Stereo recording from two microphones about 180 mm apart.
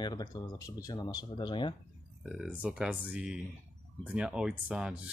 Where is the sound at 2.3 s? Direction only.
5° right (ahead or behind).